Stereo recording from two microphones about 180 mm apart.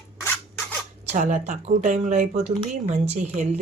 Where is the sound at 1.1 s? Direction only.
45° right (ahead or behind).